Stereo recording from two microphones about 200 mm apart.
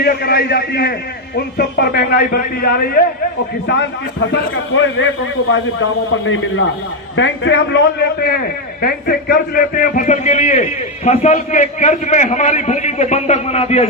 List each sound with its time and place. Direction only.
0.0 s a man's voice: 50° left (ahead or behind)
4.7 s a man's voice: 70° left (ahead or behind)
6.2 s a man's voice: 80° left
7.2 s a man's voice: 65° left (ahead or behind); by 13.8 s 30° left (ahead or behind)